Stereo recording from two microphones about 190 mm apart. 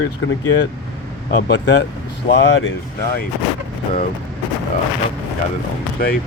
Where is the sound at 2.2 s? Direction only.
75° left (ahead or behind).